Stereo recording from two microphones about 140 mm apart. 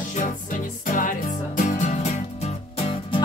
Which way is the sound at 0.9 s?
70° left (ahead or behind).